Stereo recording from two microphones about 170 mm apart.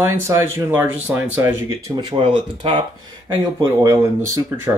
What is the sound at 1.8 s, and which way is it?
Speech, 25° right (ahead or behind).